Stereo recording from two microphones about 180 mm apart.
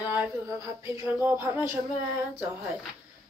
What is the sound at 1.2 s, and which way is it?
Speech, 10° right (ahead or behind).